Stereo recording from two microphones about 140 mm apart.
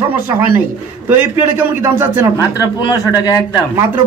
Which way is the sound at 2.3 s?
30° left (ahead or behind).